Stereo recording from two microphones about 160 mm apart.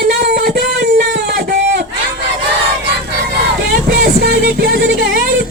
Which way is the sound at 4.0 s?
70° right (ahead or behind).